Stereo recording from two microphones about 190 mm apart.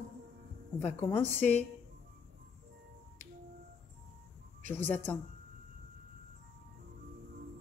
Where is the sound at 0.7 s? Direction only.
10° left (ahead or behind).